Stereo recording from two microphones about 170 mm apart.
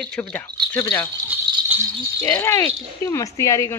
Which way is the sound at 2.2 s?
15° left (ahead or behind).